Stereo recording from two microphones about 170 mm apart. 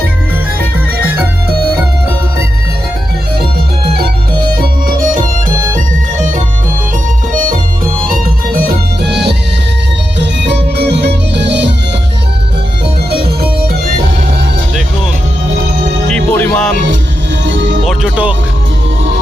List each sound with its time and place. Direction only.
1.0 s music: 10° right (ahead or behind)
4.5 s music: 55° right (ahead or behind)
8.0 s music: 55° right (ahead or behind); by 9.3 s 75° right (ahead or behind)
10.2 s music: 90° right
13.1 s music: 65° right (ahead or behind)
16.0 s music: 10° left (ahead or behind)
17.4 s music: 90° right
17.8 s music: 5° right (ahead or behind)